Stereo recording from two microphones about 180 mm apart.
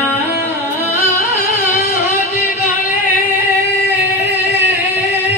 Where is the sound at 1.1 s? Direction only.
50° left (ahead or behind).